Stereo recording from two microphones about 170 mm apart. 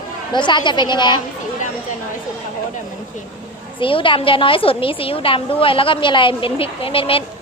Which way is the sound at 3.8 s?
30° left (ahead or behind).